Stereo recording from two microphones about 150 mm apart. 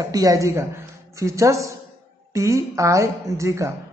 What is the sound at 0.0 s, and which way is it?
A woman's voice, 25° right (ahead or behind).